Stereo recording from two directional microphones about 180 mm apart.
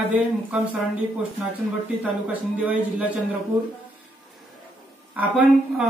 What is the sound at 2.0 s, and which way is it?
Speech, 10° right (ahead or behind).